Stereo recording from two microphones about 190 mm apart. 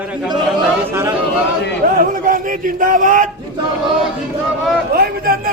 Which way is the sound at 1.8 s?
50° right (ahead or behind).